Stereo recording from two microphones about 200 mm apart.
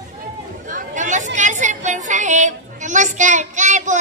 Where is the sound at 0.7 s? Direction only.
40° right (ahead or behind).